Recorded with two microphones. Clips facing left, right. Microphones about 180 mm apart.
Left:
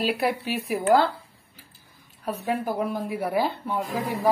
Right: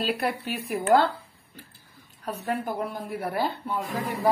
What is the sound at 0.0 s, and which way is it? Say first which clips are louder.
Speech: left 3 dB; centre (ahead or behind).